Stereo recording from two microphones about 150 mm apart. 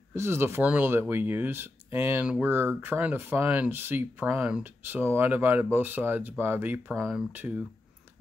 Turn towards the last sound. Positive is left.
turn(degrees=-10)  # may be behind; listen again after turning